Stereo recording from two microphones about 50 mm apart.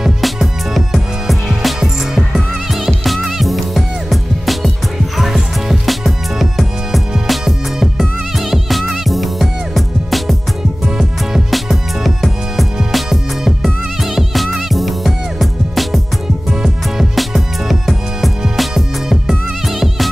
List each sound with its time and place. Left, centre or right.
0.0 s music: centre
11.5 s music: centre